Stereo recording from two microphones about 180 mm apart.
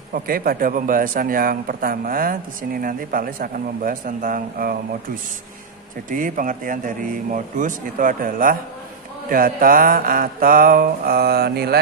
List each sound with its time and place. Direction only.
0.1 s speech: 55° right (ahead or behind)
6.0 s speech: 45° right (ahead or behind)